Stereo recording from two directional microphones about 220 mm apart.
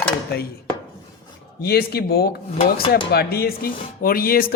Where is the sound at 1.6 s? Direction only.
45° left (ahead or behind).